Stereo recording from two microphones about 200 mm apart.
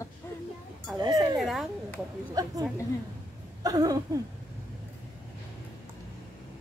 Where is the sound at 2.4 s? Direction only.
20° right (ahead or behind).